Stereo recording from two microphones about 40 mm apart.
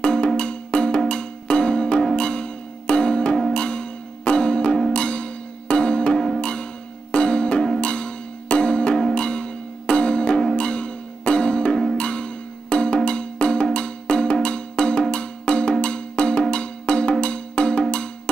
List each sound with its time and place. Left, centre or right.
0.0 s music: left
6.1 s music: centre
6.4 s music: left